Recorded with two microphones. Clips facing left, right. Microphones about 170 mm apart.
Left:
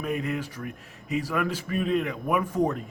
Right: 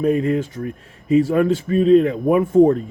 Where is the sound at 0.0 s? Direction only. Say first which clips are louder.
Right 11 dB; 30° right (ahead or behind).